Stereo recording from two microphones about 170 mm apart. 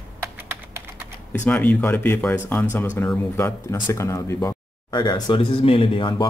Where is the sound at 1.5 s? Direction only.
10° left (ahead or behind).